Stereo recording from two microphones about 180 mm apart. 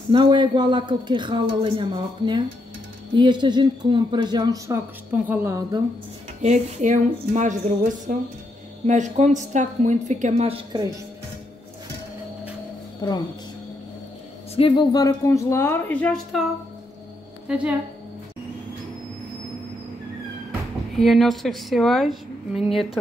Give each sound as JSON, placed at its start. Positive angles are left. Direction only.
{"t": 0.1, "sound": "a woman's voice", "side_deg": -25}
{"t": 6.4, "sound": "a woman's voice", "side_deg": -40}
{"t": 14.5, "sound": "a woman's voice", "side_deg": 30}
{"t": 17.5, "sound": "a woman's voice", "side_deg": -5}
{"t": 20.9, "sound": "a woman's voice", "side_deg": 0}